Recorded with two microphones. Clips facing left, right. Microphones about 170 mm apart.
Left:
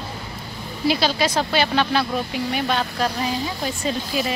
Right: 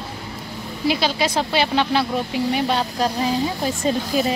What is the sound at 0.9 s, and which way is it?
Speech, 20° right (ahead or behind).